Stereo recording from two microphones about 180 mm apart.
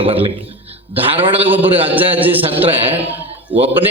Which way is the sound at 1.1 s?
10° right (ahead or behind).